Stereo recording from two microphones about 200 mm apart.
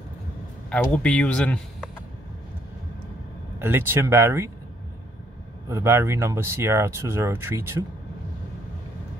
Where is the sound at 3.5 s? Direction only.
10° right (ahead or behind).